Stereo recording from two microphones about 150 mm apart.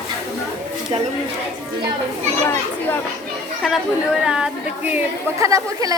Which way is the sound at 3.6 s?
Centre (ahead or behind).